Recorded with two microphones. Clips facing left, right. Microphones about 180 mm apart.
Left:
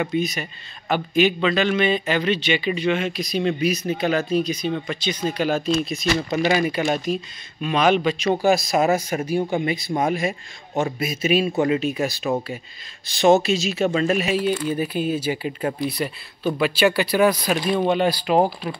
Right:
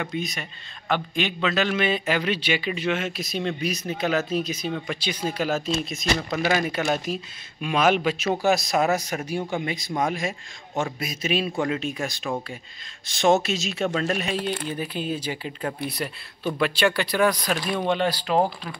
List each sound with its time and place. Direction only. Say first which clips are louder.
0.0 s a man's voice: left 6 dB; centre (ahead or behind)